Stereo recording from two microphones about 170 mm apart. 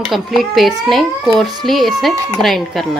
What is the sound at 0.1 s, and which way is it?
A child's voice, centre (ahead or behind).